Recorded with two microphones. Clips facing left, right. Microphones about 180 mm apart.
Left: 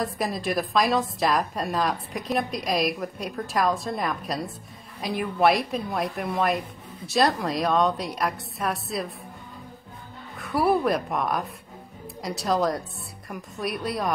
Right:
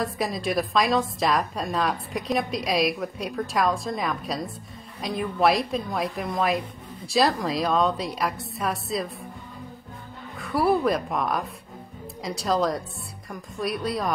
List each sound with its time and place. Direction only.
0.0 s a woman's voice: centre (ahead or behind)
10.3 s a woman's voice: centre (ahead or behind)